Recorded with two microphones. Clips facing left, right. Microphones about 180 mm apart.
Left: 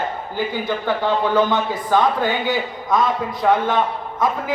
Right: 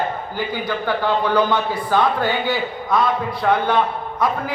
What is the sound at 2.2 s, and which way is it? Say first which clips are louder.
A man's voice: even; 20° left (ahead or behind).